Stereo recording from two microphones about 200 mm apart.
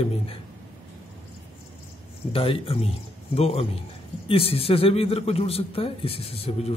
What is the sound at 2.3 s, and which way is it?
A man's voice, 30° left (ahead or behind).